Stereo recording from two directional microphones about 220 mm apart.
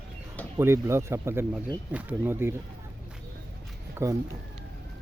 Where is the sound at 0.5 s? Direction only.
10° right (ahead or behind).